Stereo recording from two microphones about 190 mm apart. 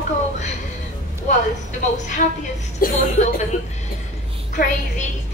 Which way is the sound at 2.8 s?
50° left (ahead or behind).